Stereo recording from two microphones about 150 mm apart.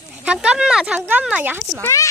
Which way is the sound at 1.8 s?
20° left (ahead or behind).